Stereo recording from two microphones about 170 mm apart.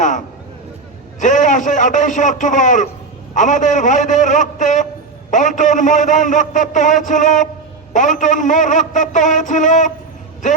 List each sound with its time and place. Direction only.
1.2 s a man's voice: 50° left (ahead or behind)